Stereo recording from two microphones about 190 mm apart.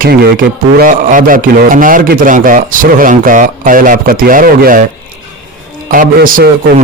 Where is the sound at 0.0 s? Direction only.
55° right (ahead or behind).